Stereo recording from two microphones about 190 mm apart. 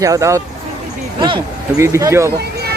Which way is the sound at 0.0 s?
15° right (ahead or behind).